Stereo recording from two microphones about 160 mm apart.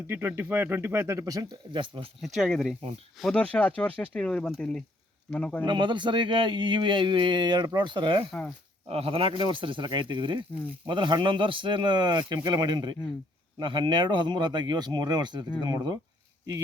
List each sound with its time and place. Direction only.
0.1 s speech: 15° right (ahead or behind); by 2.0 s 30° right (ahead or behind)
2.2 s speech: centre (ahead or behind)
5.6 s speech: 30° right (ahead or behind)
8.3 s speech: centre (ahead or behind)
8.9 s speech: 35° right (ahead or behind)